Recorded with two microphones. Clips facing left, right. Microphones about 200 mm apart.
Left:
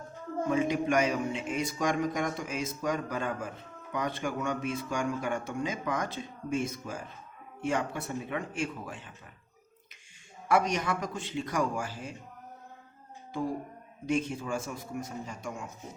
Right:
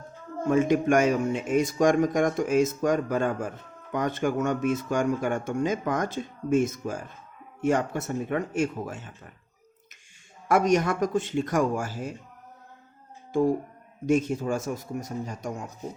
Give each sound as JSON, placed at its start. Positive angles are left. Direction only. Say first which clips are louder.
{"t": 0.4, "sound": "speech", "louder": "right 6 dB", "side_deg": -45}
{"t": 10.5, "sound": "speech", "louder": "right 6 dB", "side_deg": -45}
{"t": 14.1, "sound": "a man's voice", "louder": "right 6 dB", "side_deg": -40}